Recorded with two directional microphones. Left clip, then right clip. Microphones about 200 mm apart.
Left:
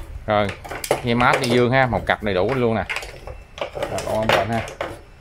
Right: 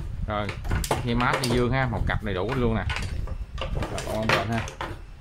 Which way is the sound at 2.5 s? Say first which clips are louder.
Left 7 dB; 30° left (ahead or behind).